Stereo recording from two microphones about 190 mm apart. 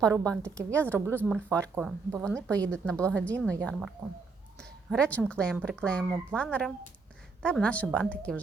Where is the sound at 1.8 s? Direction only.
5° right (ahead or behind).